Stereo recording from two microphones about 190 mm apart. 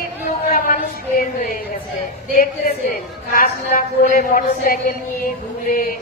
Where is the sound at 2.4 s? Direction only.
50° left (ahead or behind).